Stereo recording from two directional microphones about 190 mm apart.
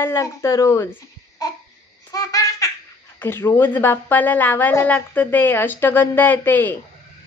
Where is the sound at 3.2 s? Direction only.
10° left (ahead or behind).